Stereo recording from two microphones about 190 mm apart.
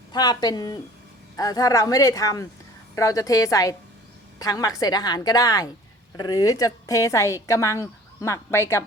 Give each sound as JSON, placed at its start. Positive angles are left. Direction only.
{"t": 0.1, "sound": "a woman's voice", "side_deg": 20}